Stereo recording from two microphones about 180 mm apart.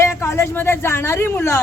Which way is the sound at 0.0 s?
15° left (ahead or behind).